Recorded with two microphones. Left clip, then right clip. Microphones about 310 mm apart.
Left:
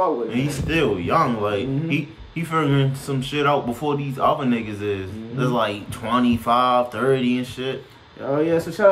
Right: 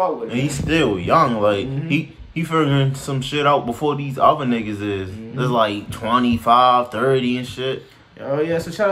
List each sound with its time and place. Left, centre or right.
0.3 s a man's voice: centre
8.4 s speech: centre